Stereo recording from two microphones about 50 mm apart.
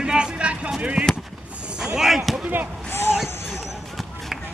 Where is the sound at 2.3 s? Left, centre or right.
Centre.